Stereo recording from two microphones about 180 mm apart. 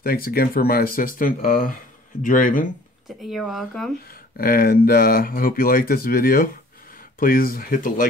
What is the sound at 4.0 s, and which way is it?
Speech, 55° left (ahead or behind).